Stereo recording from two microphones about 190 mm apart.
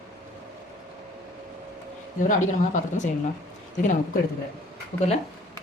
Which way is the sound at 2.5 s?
40° left (ahead or behind).